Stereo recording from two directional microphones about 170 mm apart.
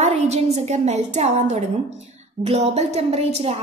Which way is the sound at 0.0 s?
40° right (ahead or behind).